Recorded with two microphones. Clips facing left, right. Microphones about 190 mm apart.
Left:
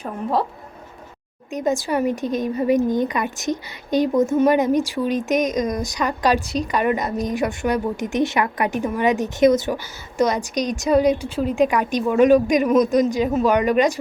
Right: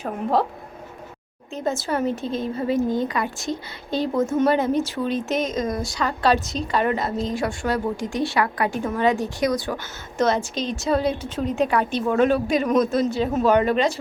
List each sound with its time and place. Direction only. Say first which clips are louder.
0.0 s speech: right 1 dB; centre (ahead or behind)
1.5 s a woman's voice: left 3 dB; 15° left (ahead or behind)
9.7 s a woman's voice: left 3 dB; 10° left (ahead or behind)